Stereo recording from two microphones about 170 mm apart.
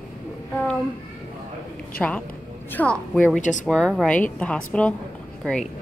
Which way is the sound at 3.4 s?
45° left (ahead or behind).